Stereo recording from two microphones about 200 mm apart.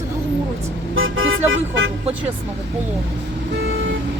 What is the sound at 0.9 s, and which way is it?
Toot, 85° right.